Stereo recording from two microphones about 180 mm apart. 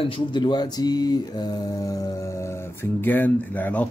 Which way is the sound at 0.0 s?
30° left (ahead or behind).